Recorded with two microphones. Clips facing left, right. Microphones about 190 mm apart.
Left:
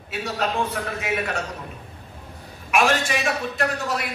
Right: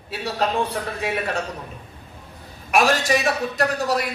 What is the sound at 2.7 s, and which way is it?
A man's voice, 40° right (ahead or behind).